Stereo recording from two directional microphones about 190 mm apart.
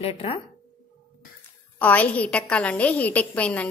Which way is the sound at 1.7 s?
10° left (ahead or behind).